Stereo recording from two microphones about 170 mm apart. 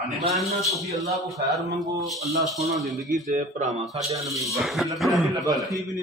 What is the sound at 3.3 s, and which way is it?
Speech, 45° right (ahead or behind).